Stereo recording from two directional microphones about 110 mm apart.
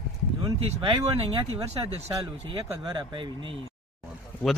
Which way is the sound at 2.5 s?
40° right (ahead or behind).